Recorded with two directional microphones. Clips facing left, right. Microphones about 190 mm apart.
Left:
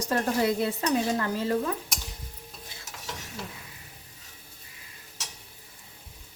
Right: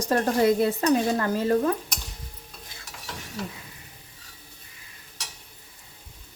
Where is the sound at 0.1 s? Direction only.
45° right (ahead or behind).